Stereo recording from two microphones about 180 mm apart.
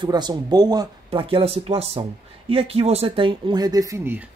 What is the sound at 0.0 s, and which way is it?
Speech, 25° right (ahead or behind).